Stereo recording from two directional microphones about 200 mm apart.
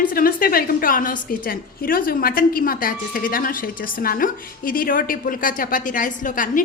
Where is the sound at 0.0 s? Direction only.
45° left (ahead or behind).